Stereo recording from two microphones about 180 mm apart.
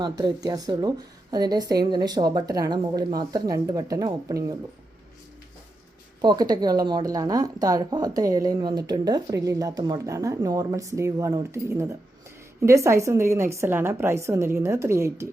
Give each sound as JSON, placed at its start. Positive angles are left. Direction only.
{"t": 0.0, "sound": "a woman's voice", "side_deg": -25}
{"t": 6.2, "sound": "a woman's voice", "side_deg": -20}